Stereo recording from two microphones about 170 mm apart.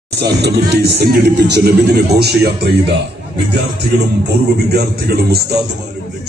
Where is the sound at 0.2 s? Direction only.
80° right.